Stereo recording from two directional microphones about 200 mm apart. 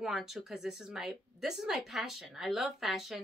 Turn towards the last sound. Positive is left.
turn(degrees=0)  # may be behind; listen again after turning